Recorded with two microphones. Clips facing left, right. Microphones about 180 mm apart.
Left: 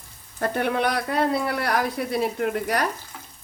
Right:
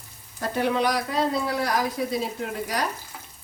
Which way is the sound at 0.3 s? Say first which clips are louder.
Even; 55° left (ahead or behind).